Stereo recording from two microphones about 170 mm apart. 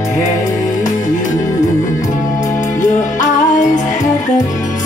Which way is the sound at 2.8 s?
50° left (ahead or behind).